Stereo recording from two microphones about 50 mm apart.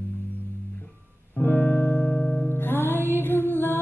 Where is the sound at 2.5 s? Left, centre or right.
Left.